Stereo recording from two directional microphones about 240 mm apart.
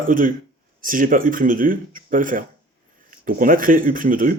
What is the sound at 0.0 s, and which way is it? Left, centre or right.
Speech, right.